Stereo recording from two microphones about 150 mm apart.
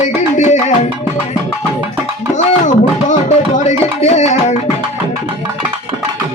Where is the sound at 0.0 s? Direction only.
55° left (ahead or behind).